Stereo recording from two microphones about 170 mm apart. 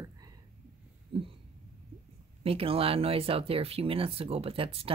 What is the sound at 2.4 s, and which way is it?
Speech, 35° right (ahead or behind).